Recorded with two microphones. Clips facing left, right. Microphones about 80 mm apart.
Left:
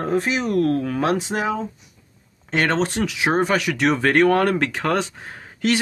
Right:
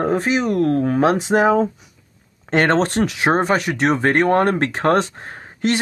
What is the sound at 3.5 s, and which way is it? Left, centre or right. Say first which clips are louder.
Speech: right 2 dB; right.